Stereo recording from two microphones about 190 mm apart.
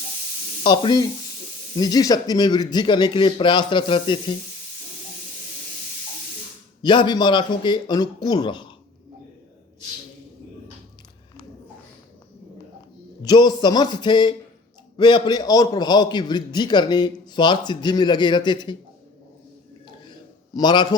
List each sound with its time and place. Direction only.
0.6 s a man's voice: 25° left (ahead or behind)
6.8 s a man's voice: 25° left (ahead or behind)
13.2 s a man's voice: 20° left (ahead or behind)
20.1 s a sound: 25° left (ahead or behind)